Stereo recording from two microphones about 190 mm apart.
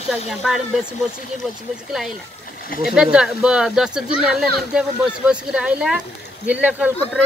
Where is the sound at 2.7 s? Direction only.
45° left (ahead or behind).